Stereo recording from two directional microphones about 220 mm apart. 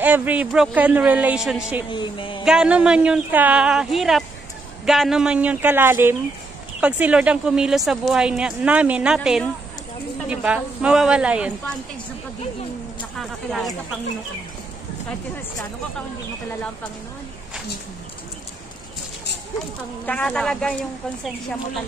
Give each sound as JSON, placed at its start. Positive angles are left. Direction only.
{"t": 0.0, "sound": "a man's voice", "side_deg": -10}
{"t": 1.9, "sound": "a woman's voice", "side_deg": 20}
{"t": 2.4, "sound": "a woman's voice", "side_deg": -5}
{"t": 13.2, "sound": "a woman's voice", "side_deg": 0}
{"t": 20.1, "sound": "a woman's voice", "side_deg": 5}